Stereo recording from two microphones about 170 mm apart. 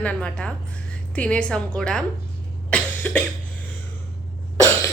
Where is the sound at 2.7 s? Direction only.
10° left (ahead or behind).